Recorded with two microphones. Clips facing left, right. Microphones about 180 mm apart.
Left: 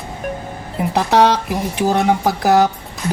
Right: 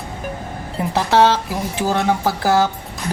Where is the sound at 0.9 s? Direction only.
15° left (ahead or behind).